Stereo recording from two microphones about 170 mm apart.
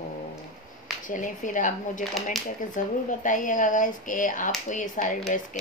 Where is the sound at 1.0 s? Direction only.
50° left (ahead or behind).